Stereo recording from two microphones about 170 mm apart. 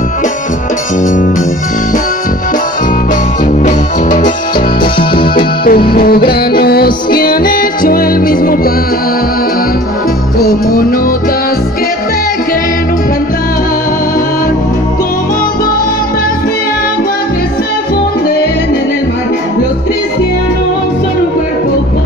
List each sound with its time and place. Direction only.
3.6 s music: 50° left (ahead or behind)
5.3 s music: 60° left (ahead or behind)
10.4 s music: 60° left (ahead or behind)